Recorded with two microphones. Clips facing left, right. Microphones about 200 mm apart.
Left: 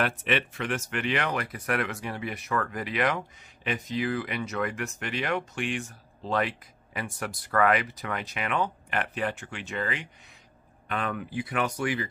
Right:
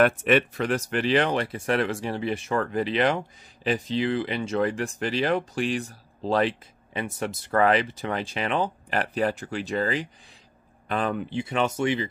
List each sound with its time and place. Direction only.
0.0 s speech: 45° right (ahead or behind); by 12.1 s 25° right (ahead or behind)